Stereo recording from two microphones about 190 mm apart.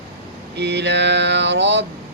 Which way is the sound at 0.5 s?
65° right (ahead or behind).